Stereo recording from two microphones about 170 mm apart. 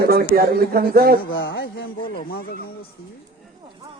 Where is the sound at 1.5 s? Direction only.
90° left.